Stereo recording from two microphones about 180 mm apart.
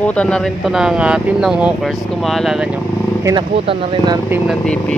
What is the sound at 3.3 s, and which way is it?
Speech, 30° right (ahead or behind).